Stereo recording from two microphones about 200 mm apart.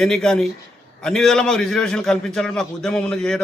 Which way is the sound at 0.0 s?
Centre (ahead or behind).